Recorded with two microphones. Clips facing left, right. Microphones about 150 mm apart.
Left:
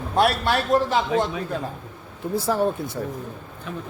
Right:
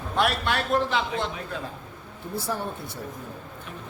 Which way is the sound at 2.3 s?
90° left.